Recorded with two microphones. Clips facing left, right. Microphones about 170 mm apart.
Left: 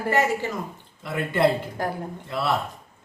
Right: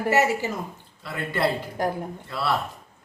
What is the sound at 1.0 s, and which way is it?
Speech, 20° left (ahead or behind).